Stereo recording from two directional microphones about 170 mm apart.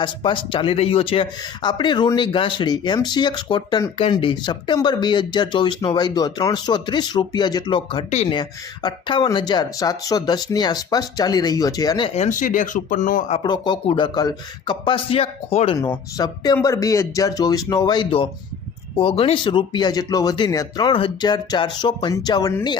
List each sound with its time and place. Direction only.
0.0 s speech: 25° left (ahead or behind)
12.1 s speech: 45° left (ahead or behind)
13.4 s speech: 25° left (ahead or behind)